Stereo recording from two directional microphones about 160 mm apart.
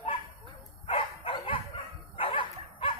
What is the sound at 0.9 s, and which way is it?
Dog, 35° left (ahead or behind).